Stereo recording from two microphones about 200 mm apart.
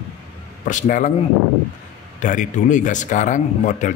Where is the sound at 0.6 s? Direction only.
40° left (ahead or behind).